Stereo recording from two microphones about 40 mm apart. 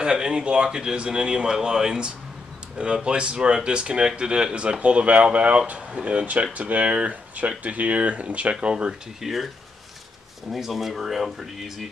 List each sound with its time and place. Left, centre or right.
0.0 s speech: right
9.2 s speech: centre
10.5 s speech: centre